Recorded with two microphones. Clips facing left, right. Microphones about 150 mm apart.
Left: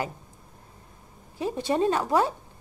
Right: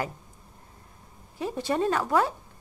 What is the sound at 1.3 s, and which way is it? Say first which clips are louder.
Speech: left 2 dB; 25° left (ahead or behind).